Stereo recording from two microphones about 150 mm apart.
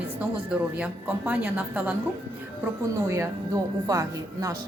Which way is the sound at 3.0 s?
20° right (ahead or behind).